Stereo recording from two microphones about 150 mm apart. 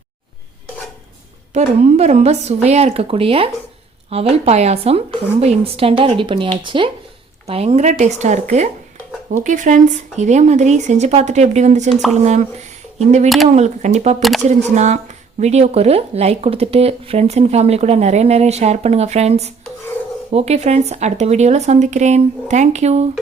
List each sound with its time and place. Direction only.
1.5 s a woman's voice: 45° right (ahead or behind)
13.2 s speech: centre (ahead or behind)
13.6 s speech: 45° right (ahead or behind)
14.2 s speech: centre (ahead or behind)
14.4 s speech: 50° right (ahead or behind)